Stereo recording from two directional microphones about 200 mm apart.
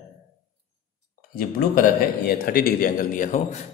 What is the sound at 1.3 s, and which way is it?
A man's voice, 45° left (ahead or behind).